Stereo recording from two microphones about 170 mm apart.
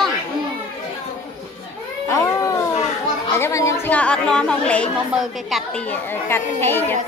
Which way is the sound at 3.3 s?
15° left (ahead or behind).